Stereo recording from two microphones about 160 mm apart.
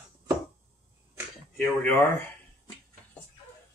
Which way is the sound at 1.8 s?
10° left (ahead or behind).